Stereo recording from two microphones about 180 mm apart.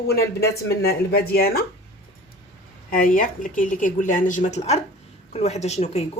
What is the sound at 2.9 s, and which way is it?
Speech, 50° left (ahead or behind).